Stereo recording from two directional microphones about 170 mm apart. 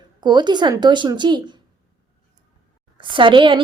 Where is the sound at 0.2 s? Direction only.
25° right (ahead or behind).